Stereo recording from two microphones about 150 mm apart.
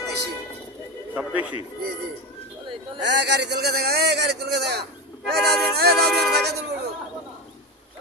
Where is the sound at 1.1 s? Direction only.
10° right (ahead or behind).